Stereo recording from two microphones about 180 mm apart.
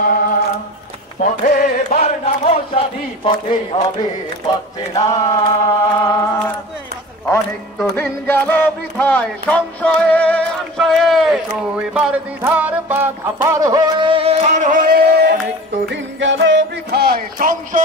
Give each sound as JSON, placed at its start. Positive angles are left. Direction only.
{"t": 0.0, "sound": "music", "side_deg": 50}
{"t": 1.2, "sound": "chant", "side_deg": 45}
{"t": 4.5, "sound": "a sound", "side_deg": 25}
{"t": 5.9, "sound": "chant", "side_deg": 10}
{"t": 7.9, "sound": "a sound", "side_deg": 10}
{"t": 15.9, "sound": "speech", "side_deg": -90}